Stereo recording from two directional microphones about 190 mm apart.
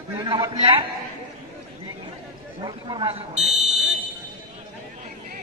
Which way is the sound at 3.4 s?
35° right (ahead or behind).